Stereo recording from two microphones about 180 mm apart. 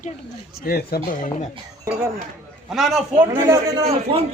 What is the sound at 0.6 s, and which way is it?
Speech, 60° left (ahead or behind).